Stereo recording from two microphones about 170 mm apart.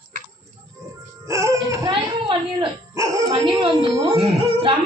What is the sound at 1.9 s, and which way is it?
Speech, 30° right (ahead or behind).